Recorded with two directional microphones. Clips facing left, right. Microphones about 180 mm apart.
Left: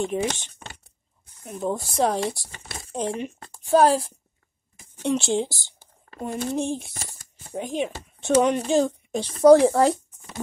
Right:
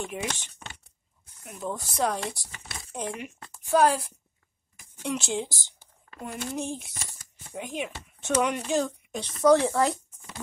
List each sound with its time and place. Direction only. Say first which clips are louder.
0.0 s speech: left 8 dB; 30° left (ahead or behind)
6.9 s speech: left 4 dB; 45° left (ahead or behind)